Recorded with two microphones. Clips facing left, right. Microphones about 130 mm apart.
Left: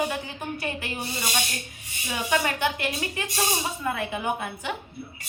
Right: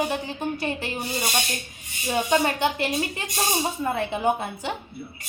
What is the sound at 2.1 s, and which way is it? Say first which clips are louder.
A woman's voice: right 4 dB; 30° right (ahead or behind).